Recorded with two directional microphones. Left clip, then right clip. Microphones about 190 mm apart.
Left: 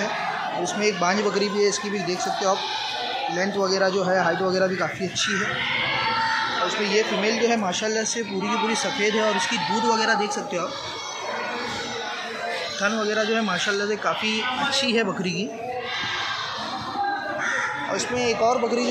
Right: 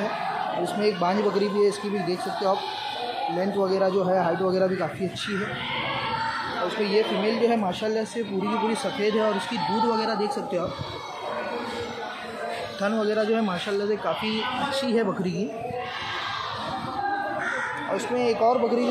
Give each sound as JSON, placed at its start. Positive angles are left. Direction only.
{"t": 0.7, "sound": "speech", "side_deg": -5}
{"t": 3.6, "sound": "speech", "side_deg": -10}
{"t": 6.8, "sound": "speech", "side_deg": -10}
{"t": 9.8, "sound": "speech", "side_deg": -5}
{"t": 12.8, "sound": "speech", "side_deg": -15}
{"t": 18.1, "sound": "speech", "side_deg": -15}